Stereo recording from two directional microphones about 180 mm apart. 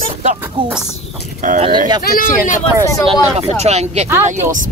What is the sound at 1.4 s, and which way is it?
Speech, 35° right (ahead or behind).